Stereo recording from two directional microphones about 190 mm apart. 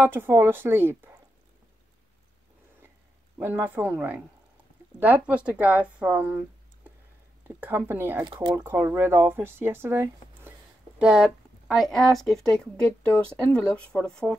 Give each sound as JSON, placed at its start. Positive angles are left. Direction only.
{"t": 0.0, "sound": "speech", "side_deg": -10}
{"t": 3.3, "sound": "speech", "side_deg": -10}
{"t": 7.4, "sound": "speech", "side_deg": -10}
{"t": 8.2, "sound": "speech", "side_deg": -25}
{"t": 8.5, "sound": "speech", "side_deg": -10}